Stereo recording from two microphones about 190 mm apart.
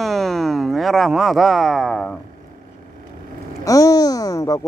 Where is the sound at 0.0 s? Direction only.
Centre (ahead or behind).